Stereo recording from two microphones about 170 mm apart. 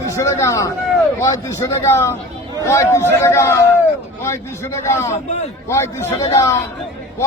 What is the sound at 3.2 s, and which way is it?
A man's voice, 15° left (ahead or behind).